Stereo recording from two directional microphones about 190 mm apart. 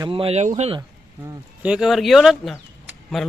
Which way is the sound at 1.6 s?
5° right (ahead or behind).